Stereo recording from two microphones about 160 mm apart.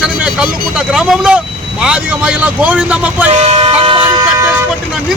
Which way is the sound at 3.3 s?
40° right (ahead or behind).